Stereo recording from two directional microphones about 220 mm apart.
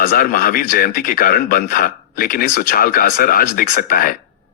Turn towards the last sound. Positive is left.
turn(degrees=40)  # may be behind; listen again after turning